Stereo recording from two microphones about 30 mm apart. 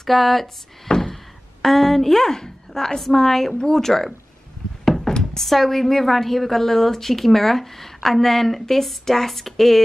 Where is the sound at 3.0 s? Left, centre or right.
Centre.